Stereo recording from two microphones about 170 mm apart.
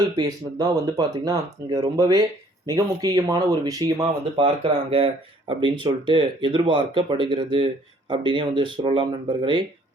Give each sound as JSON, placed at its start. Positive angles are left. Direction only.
{"t": 0.0, "sound": "speech", "side_deg": -20}